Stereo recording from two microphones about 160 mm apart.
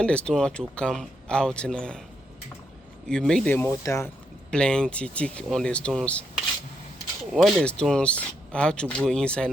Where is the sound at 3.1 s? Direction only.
5° left (ahead or behind).